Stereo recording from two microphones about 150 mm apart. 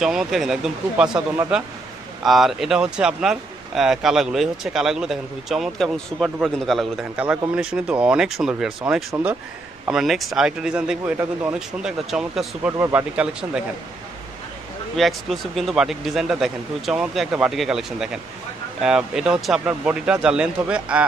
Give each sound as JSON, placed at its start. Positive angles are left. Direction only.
{"t": 0.0, "sound": "speech", "side_deg": -5}
{"t": 2.2, "sound": "speech", "side_deg": 0}
{"t": 12.7, "sound": "speech", "side_deg": -20}
{"t": 13.1, "sound": "speech", "side_deg": -5}
{"t": 15.0, "sound": "speech", "side_deg": 0}